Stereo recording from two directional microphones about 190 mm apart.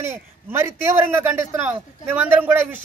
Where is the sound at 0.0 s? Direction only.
15° right (ahead or behind).